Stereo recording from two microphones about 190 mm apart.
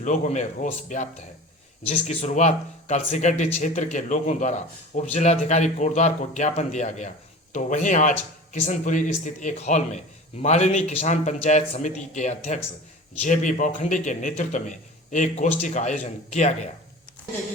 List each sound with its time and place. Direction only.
0.0 s speech: 40° left (ahead or behind)